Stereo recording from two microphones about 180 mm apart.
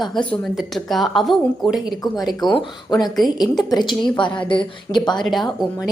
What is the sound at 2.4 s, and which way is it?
Speech, 25° left (ahead or behind).